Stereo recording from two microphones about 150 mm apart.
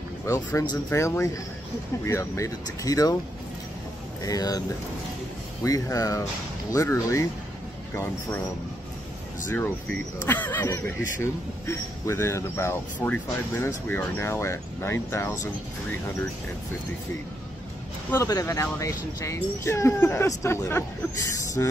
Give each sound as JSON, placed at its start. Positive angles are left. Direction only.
{"t": 0.3, "sound": "speech", "side_deg": 20}
{"t": 4.2, "sound": "speech", "side_deg": 25}
{"t": 9.5, "sound": "speech", "side_deg": 15}
{"t": 18.1, "sound": "speech", "side_deg": 20}